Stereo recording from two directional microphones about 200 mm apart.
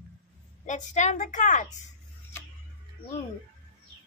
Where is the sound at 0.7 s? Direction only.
35° left (ahead or behind).